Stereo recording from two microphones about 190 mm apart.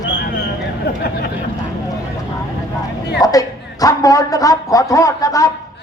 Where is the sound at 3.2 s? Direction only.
20° left (ahead or behind).